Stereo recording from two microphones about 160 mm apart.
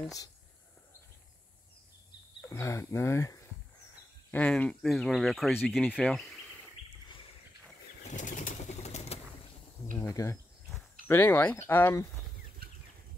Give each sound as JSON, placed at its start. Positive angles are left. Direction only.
{"t": 2.4, "sound": "speech", "side_deg": 15}
{"t": 4.3, "sound": "speech", "side_deg": 5}
{"t": 8.0, "sound": "bird flight", "side_deg": 50}
{"t": 9.9, "sound": "speech", "side_deg": 20}